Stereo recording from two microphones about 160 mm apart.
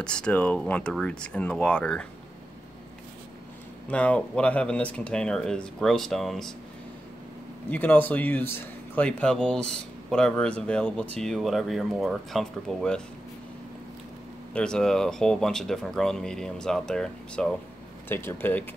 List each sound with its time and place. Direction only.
0.0 s speech: 5° left (ahead or behind)
3.9 s speech: 10° left (ahead or behind)
7.7 s speech: 10° left (ahead or behind)
14.5 s speech: 5° left (ahead or behind)